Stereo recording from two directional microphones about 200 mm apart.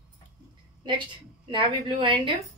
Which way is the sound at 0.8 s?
25° right (ahead or behind).